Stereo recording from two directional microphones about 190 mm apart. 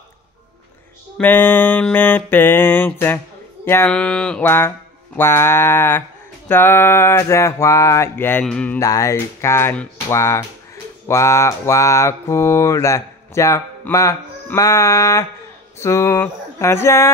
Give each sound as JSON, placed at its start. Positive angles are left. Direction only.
{"t": 1.1, "sound": "mantra", "side_deg": 10}